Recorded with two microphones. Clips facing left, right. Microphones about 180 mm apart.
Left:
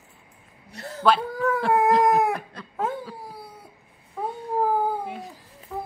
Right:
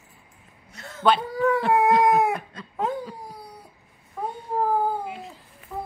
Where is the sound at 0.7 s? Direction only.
35° left (ahead or behind).